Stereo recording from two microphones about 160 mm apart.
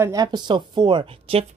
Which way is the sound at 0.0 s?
20° right (ahead or behind).